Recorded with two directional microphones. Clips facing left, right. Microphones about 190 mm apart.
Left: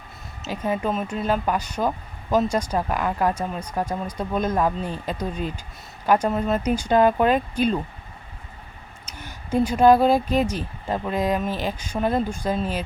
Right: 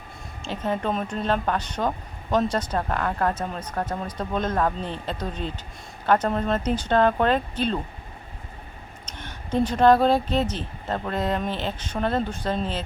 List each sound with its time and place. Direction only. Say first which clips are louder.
0.4 s speech: left 1 dB; 10° left (ahead or behind)
9.0 s speech: left 2 dB; 10° left (ahead or behind)